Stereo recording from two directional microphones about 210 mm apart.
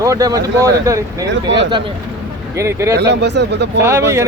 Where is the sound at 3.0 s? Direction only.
55° right (ahead or behind).